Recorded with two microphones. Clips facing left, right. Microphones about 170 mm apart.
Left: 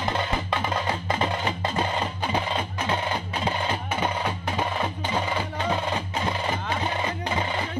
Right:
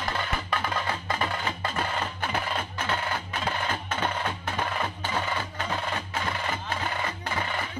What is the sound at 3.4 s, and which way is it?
Music, 10° left (ahead or behind).